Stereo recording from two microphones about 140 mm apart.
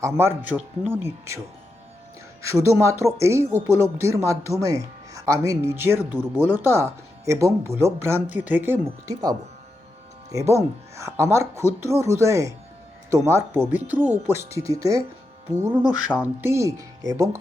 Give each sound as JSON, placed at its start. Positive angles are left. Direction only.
{"t": 0.0, "sound": "speech", "side_deg": -15}
{"t": 2.4, "sound": "speech", "side_deg": -20}
{"t": 10.3, "sound": "speech", "side_deg": -20}